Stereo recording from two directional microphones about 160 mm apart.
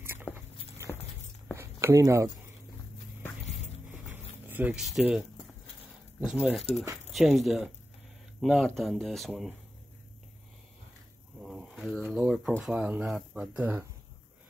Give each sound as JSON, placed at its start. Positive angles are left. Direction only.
{"t": 0.0, "sound": "walk", "side_deg": -15}
{"t": 0.9, "sound": "walk", "side_deg": 10}
{"t": 1.6, "sound": "speech", "side_deg": -15}
{"t": 4.5, "sound": "speech", "side_deg": -10}
{"t": 6.2, "sound": "speech", "side_deg": -5}
{"t": 11.4, "sound": "a sound", "side_deg": 0}
{"t": 12.0, "sound": "speech", "side_deg": -5}